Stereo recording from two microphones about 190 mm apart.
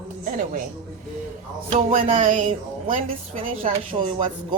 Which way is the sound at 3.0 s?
30° right (ahead or behind).